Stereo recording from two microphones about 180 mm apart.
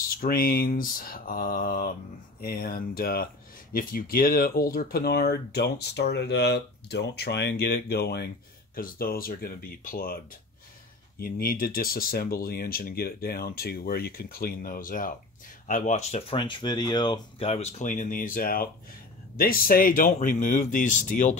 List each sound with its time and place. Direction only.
0.0 s speech: 50° left (ahead or behind)